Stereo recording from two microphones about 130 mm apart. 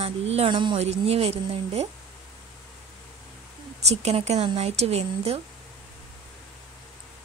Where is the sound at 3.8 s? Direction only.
55° right (ahead or behind).